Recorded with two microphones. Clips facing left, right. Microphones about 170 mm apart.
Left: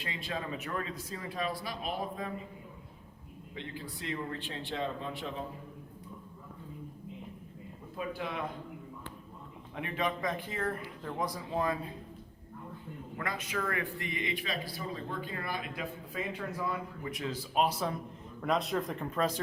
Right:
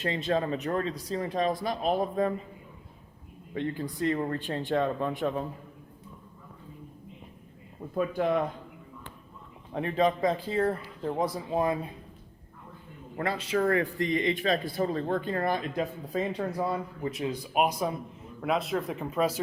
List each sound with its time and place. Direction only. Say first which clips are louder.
0.0 s speech: right 10 dB; 40° right (ahead or behind)
3.5 s speech: right 11 dB; 50° right (ahead or behind)
7.9 s speech: right 10 dB; 50° right (ahead or behind)
9.7 s speech: right 8 dB; 35° right (ahead or behind)
13.1 s speech: right 8 dB; 30° right (ahead or behind); by 17.9 s 15° right (ahead or behind)
18.4 s speech: right 3 dB; 5° right (ahead or behind)